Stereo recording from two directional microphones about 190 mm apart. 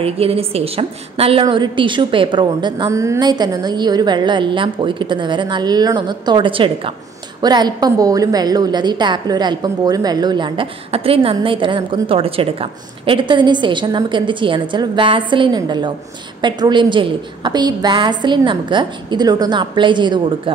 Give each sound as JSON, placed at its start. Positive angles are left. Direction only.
{"t": 0.0, "sound": "a woman's voice", "side_deg": -30}